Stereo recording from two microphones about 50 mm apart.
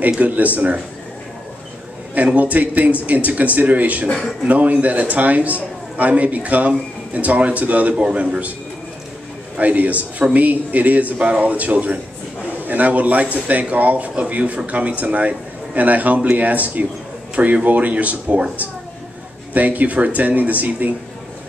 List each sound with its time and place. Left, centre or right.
0.2 s a man's voice: right
2.1 s a man's voice: right
7.9 s speech: right
9.6 s a man's voice: right